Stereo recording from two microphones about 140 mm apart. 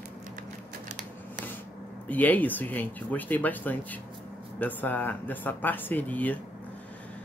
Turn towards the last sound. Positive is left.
turn(degrees=10)  # may be behind; listen again after turning